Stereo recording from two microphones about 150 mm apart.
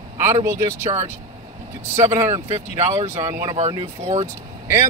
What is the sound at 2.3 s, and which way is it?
Speech, 50° right (ahead or behind).